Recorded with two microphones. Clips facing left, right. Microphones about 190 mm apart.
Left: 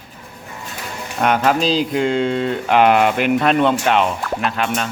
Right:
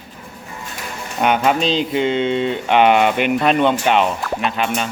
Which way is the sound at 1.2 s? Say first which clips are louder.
Even; centre (ahead or behind).